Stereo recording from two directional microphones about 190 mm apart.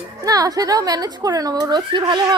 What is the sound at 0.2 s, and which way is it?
Speech, 20° right (ahead or behind).